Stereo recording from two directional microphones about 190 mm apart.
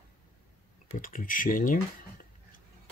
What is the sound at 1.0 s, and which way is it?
Speech, 45° left (ahead or behind).